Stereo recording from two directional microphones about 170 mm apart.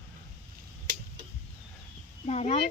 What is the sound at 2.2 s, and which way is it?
Speech, 40° left (ahead or behind).